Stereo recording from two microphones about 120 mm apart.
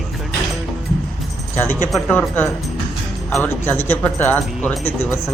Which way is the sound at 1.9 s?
10° left (ahead or behind).